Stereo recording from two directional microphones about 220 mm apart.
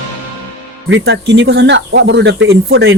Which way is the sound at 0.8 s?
50° right (ahead or behind).